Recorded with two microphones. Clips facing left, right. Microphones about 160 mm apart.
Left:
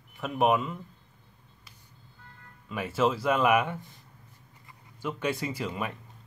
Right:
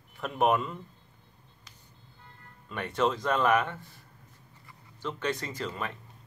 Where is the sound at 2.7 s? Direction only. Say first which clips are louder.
Left 2 dB; 5° left (ahead or behind).